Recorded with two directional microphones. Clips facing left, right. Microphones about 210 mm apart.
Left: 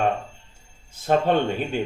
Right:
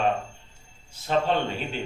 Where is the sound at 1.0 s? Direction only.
50° left (ahead or behind).